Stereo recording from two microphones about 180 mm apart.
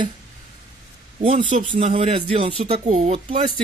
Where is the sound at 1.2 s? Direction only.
40° right (ahead or behind).